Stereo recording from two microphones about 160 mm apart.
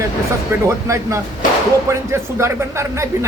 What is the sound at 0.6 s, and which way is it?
A man's voice, 20° right (ahead or behind).